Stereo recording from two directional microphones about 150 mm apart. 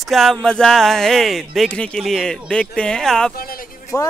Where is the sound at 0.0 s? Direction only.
Centre (ahead or behind).